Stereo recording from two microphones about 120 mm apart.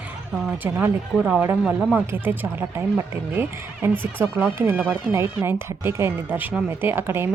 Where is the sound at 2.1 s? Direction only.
15° right (ahead or behind).